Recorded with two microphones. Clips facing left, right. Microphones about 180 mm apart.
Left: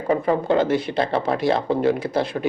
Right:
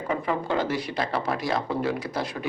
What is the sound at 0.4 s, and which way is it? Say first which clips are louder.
A man's voice: left 7 dB; 25° left (ahead or behind).